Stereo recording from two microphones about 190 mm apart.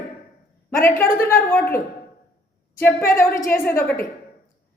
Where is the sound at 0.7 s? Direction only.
15° left (ahead or behind).